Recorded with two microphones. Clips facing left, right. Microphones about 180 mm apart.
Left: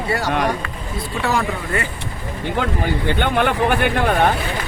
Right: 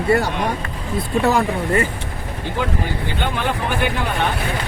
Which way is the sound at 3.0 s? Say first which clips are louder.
Left 6 dB; 60° left (ahead or behind).